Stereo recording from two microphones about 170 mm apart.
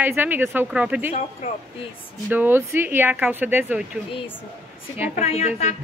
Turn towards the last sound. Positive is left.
turn(degrees=40)  # may be behind; listen again after turning